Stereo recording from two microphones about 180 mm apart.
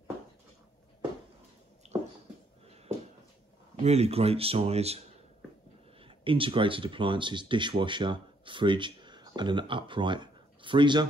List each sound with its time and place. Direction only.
1.8 s a sound: 35° right (ahead or behind)
3.7 s a man's voice: 35° right (ahead or behind)
6.0 s speech: 30° right (ahead or behind)